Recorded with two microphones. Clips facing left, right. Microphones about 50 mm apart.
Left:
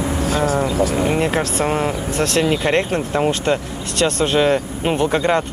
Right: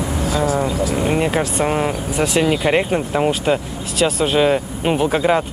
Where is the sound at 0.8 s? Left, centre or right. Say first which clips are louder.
Left 2 dB; left.